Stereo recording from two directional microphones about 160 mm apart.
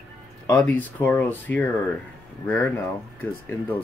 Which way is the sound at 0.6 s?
10° left (ahead or behind).